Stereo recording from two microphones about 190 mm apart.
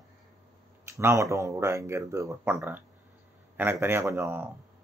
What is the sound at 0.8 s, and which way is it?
Speech, 15° right (ahead or behind).